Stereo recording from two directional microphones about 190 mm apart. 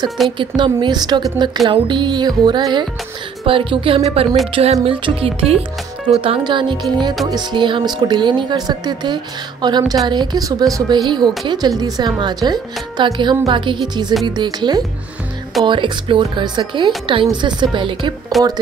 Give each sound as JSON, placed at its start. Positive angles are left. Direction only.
{"t": 0.4, "sound": "speech", "side_deg": -25}
{"t": 4.5, "sound": "music", "side_deg": -30}
{"t": 5.0, "sound": "speech", "side_deg": -30}
{"t": 18.3, "sound": "speech", "side_deg": 0}